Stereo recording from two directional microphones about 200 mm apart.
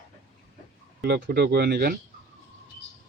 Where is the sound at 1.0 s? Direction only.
55° right (ahead or behind).